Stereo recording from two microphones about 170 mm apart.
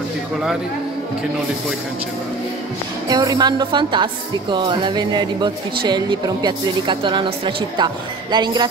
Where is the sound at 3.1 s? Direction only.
25° right (ahead or behind).